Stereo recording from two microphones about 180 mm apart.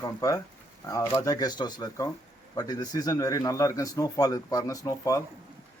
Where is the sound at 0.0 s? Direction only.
20° left (ahead or behind).